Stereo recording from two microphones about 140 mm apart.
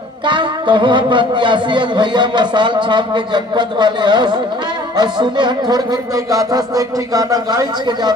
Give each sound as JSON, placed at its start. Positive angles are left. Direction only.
{"t": 0.3, "sound": "a man's voice", "side_deg": -35}